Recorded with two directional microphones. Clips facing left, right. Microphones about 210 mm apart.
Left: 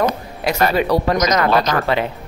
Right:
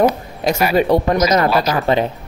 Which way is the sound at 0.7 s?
25° right (ahead or behind).